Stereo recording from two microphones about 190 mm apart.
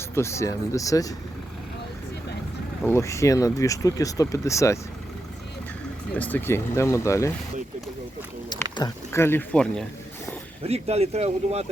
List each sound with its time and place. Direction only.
0.1 s speech: 15° left (ahead or behind)
2.8 s speech: 15° left (ahead or behind)
6.1 s speech: 10° left (ahead or behind)
8.7 s speech: 15° left (ahead or behind)
10.6 s speech: 35° right (ahead or behind)